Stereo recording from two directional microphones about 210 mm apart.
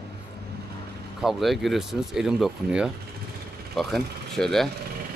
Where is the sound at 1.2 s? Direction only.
Centre (ahead or behind).